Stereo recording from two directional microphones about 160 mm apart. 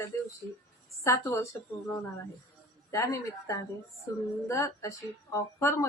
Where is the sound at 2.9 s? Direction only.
20° left (ahead or behind).